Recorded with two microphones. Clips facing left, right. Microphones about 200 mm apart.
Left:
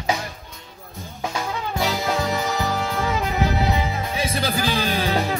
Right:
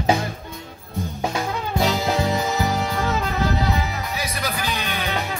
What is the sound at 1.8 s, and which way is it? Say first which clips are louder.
Music: right 2 dB; 15° right (ahead or behind).